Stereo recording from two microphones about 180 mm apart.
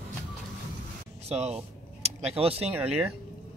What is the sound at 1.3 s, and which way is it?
Speech, 35° right (ahead or behind).